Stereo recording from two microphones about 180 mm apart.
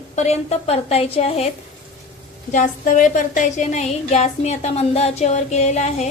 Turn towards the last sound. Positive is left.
turn(degrees=40)  # may be behind; listen again after turning